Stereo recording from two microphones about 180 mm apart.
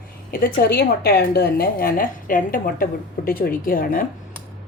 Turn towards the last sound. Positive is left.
turn(degrees=50)  # may be behind; listen again after turning